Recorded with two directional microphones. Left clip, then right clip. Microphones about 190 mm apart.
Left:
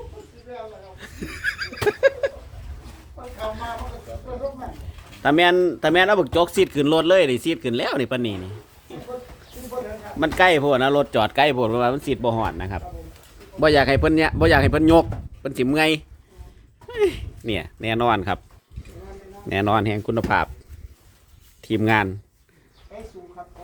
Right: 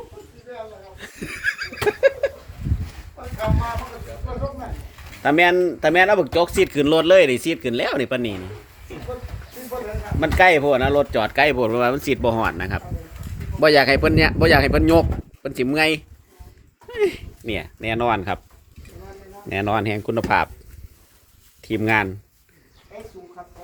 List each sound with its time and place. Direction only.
0.9 s a sound: 20° right (ahead or behind); by 2.3 s centre (ahead or behind)
5.2 s speech: centre (ahead or behind)
10.2 s speech: 5° left (ahead or behind)
13.6 s speech: 5° left (ahead or behind)
19.5 s a man's voice: 20° left (ahead or behind)
19.8 s speech: 5° left (ahead or behind)
21.6 s speech: 15° left (ahead or behind)